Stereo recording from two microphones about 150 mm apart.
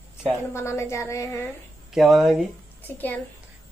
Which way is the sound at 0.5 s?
15° left (ahead or behind).